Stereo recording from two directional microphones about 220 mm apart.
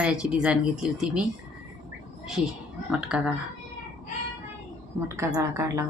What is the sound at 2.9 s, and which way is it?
Speech, 5° right (ahead or behind).